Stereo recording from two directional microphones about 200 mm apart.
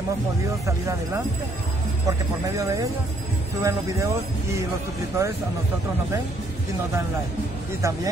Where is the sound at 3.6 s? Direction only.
15° right (ahead or behind).